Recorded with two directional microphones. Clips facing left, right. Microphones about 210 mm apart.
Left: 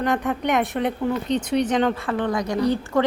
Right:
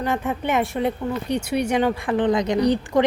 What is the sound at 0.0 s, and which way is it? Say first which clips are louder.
A woman's voice: left 1 dB; centre (ahead or behind).